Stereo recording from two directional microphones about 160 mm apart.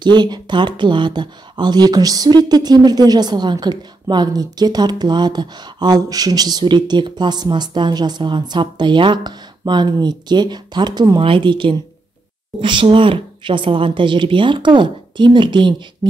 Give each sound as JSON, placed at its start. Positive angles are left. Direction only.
{"t": 0.0, "sound": "speech", "side_deg": -30}